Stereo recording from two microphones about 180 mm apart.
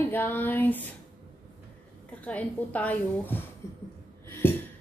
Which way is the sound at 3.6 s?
15° left (ahead or behind).